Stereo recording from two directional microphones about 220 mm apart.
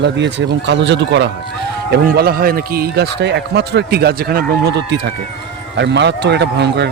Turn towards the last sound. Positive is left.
turn(degrees=-50)  # may be behind; listen again after turning